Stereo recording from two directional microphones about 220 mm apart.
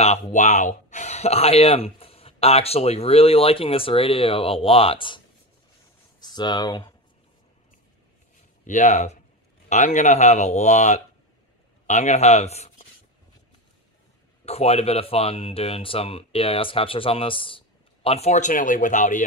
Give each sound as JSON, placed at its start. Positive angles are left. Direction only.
{"t": 0.0, "sound": "speech", "side_deg": 30}
{"t": 6.2, "sound": "speech", "side_deg": 20}
{"t": 8.6, "sound": "speech", "side_deg": 35}
{"t": 14.4, "sound": "speech", "side_deg": 30}